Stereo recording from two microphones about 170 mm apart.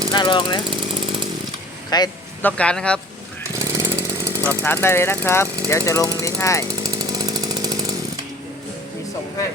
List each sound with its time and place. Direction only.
0.1 s speech: 25° left (ahead or behind)
1.9 s speech: 25° left (ahead or behind)
2.4 s speech: 10° left (ahead or behind)
3.5 s chainsaw: 15° right (ahead or behind)
4.4 s speech: 15° left (ahead or behind)
6.8 s chainsaw: 20° right (ahead or behind)